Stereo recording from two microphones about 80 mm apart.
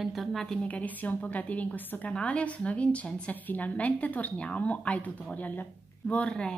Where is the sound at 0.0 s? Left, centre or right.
Centre.